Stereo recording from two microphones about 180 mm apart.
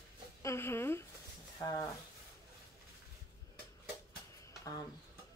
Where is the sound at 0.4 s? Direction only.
15° left (ahead or behind).